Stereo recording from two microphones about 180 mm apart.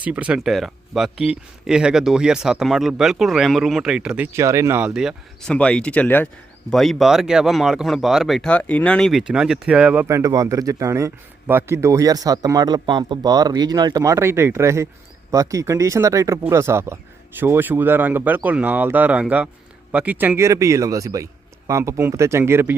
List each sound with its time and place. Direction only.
0.0 s speech: 10° right (ahead or behind)